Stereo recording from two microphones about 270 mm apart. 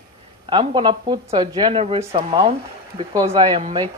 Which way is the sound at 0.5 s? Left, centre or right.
Centre.